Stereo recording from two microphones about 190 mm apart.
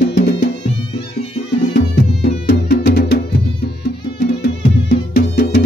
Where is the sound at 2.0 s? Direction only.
60° left (ahead or behind).